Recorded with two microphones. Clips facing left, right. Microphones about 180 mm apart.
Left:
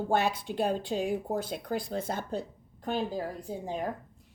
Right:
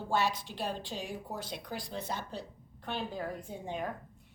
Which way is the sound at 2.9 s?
40° left (ahead or behind).